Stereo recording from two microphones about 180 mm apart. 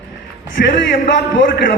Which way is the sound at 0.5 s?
80° left.